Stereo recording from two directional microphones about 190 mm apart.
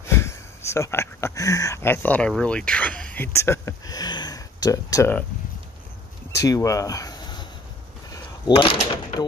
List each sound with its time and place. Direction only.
0.0 s speech: 15° left (ahead or behind)
6.4 s speech: 20° left (ahead or behind)
8.1 s a sound: 25° left (ahead or behind)